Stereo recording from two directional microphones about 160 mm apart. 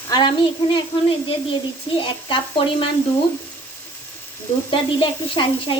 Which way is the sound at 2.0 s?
35° left (ahead or behind).